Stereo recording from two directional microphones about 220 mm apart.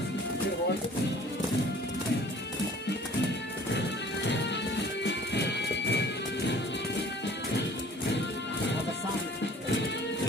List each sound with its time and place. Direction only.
5.0 s music: 50° left (ahead or behind)